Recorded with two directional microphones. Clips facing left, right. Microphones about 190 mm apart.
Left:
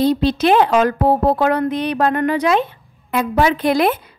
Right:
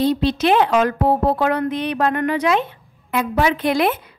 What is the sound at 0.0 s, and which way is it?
A woman's voice, 40° left (ahead or behind).